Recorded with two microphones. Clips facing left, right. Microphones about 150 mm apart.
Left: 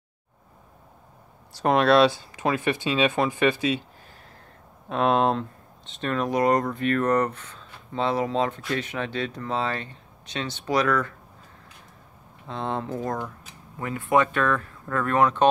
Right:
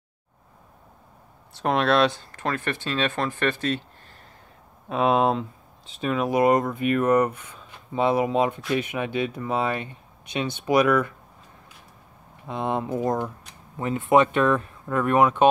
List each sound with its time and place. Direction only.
1.5 s speech: centre (ahead or behind)
12.4 s speech: 15° right (ahead or behind)